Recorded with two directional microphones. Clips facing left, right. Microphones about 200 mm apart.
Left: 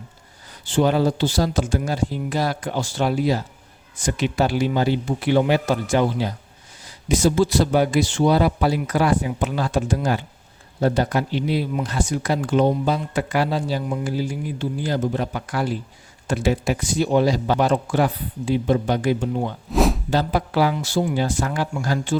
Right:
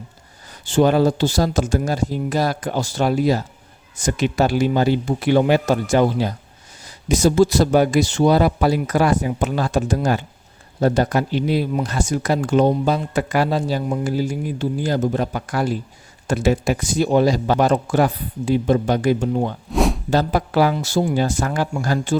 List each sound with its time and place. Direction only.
0.6 s speech: 45° right (ahead or behind)
19.7 s a sound: centre (ahead or behind)
20.1 s speech: 45° right (ahead or behind)